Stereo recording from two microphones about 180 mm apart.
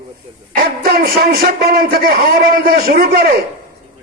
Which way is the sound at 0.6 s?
55° right (ahead or behind).